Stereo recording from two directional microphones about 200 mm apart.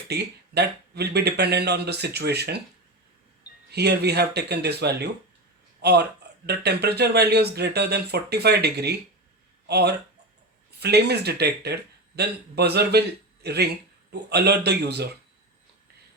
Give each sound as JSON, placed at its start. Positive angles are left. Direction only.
{"t": 0.1, "sound": "speech", "side_deg": -55}
{"t": 3.7, "sound": "speech", "side_deg": -55}